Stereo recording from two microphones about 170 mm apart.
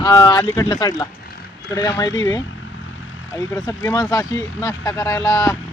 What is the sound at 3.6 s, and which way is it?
Speech, 20° left (ahead or behind).